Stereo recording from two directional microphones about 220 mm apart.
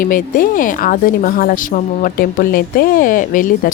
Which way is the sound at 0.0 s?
40° left (ahead or behind).